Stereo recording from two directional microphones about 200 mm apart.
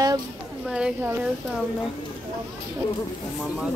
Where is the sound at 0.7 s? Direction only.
5° right (ahead or behind).